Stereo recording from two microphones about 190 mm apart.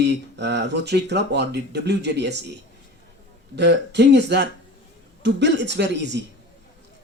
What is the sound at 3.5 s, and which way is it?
Speech, 65° right (ahead or behind).